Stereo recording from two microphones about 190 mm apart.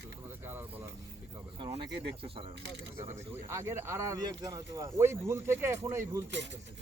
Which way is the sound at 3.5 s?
15° right (ahead or behind).